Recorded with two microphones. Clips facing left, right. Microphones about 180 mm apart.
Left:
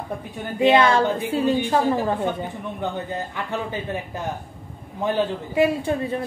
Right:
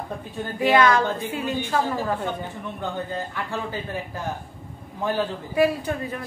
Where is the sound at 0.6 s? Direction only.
25° left (ahead or behind).